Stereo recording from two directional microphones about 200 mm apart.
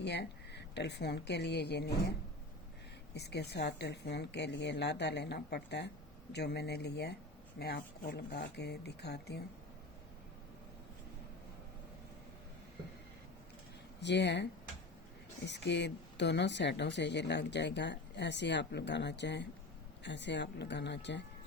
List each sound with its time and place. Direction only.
0.0 s a woman's voice: 60° left (ahead or behind)
3.2 s speech: 55° left (ahead or behind)
14.0 s speech: 60° left (ahead or behind)
15.4 s speech: 60° left (ahead or behind)